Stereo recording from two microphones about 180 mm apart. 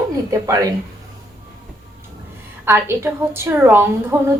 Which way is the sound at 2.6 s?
15° right (ahead or behind).